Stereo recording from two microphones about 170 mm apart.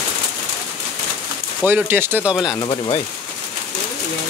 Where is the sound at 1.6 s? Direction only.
10° right (ahead or behind).